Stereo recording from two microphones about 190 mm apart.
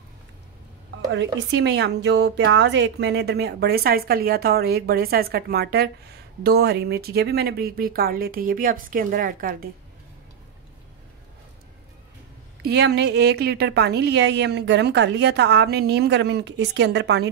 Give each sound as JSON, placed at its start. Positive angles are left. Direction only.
{"t": 1.1, "sound": "a woman's voice", "side_deg": -65}
{"t": 12.6, "sound": "a woman's voice", "side_deg": -60}